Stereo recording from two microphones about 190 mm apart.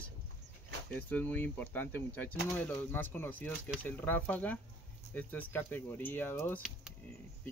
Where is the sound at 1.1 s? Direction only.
10° left (ahead or behind).